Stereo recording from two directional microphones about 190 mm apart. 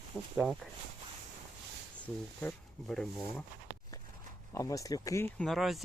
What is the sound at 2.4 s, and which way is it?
Speech, 5° left (ahead or behind).